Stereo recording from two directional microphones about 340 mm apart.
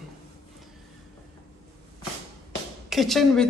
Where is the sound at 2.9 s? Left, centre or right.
Centre.